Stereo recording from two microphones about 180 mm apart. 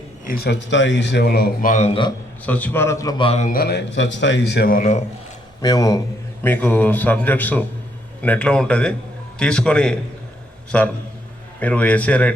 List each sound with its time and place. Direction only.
0.3 s a man's voice: 60° left (ahead or behind)
1.9 s a man's voice: 25° left (ahead or behind)
2.5 s a man's voice: 10° left (ahead or behind); by 3.5 s 35° left (ahead or behind)
3.5 s a man's voice: 65° left (ahead or behind); by 5.0 s 45° left (ahead or behind)
5.6 s a man's voice: 20° left (ahead or behind)